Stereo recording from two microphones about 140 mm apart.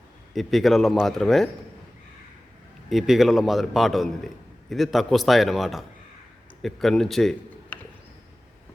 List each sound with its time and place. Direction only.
0.3 s a man's voice: centre (ahead or behind)
2.9 s a man's voice: centre (ahead or behind)